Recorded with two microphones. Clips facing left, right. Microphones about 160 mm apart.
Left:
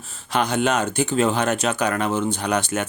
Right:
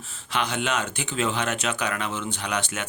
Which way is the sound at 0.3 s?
40° left (ahead or behind).